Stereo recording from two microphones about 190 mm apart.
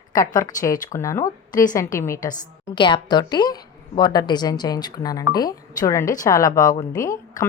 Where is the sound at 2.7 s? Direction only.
25° left (ahead or behind).